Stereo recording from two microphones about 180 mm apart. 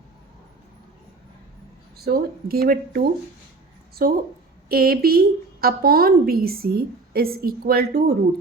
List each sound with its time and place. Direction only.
2.0 s a woman's voice: 55° right (ahead or behind)